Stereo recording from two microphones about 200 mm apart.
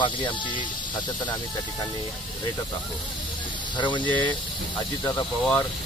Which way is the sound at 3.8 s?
20° left (ahead or behind).